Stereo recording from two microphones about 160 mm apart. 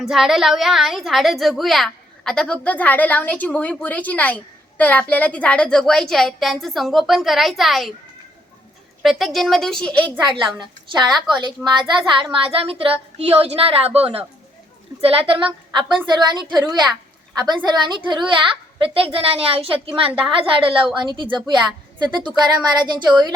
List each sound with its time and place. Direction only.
0.0 s a woman's voice: centre (ahead or behind)
9.0 s a woman's voice: centre (ahead or behind)
10.2 s a woman's voice: 30° right (ahead or behind)